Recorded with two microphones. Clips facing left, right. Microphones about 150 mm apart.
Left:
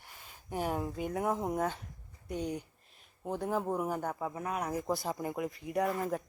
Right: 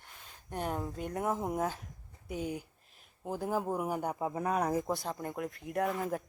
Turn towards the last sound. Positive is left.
turn(degrees=0)  # may be behind; listen again after turning